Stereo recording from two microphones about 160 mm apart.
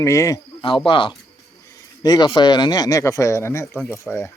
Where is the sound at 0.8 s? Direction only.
30° left (ahead or behind); by 4.3 s 15° left (ahead or behind).